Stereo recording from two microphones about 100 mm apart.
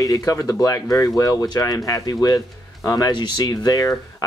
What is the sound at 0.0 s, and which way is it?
Speech, 35° left (ahead or behind).